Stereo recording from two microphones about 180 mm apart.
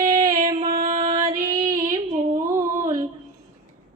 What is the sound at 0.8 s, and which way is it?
Female singing, 45° right (ahead or behind).